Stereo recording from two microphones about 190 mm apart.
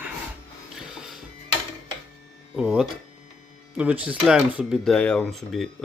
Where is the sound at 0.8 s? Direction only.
Centre (ahead or behind).